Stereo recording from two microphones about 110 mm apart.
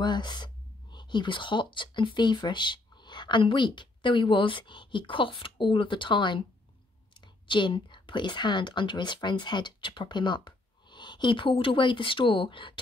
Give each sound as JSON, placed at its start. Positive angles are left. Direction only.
{"t": 0.0, "sound": "a woman's voice", "side_deg": 40}